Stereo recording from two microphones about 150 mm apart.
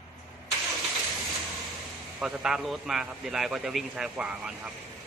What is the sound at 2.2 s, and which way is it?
A man's voice, 5° right (ahead or behind).